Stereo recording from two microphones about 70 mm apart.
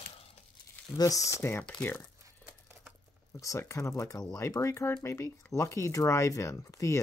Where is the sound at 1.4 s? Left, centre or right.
Left.